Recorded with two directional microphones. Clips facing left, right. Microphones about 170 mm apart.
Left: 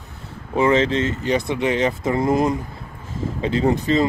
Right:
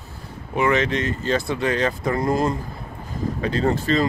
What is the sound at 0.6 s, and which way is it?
Speech, 30° left (ahead or behind).